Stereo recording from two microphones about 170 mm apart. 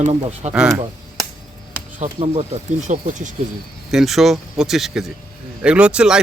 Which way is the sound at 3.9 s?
Centre (ahead or behind).